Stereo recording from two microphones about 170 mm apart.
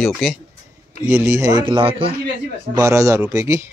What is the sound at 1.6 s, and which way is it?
Speech, 30° right (ahead or behind).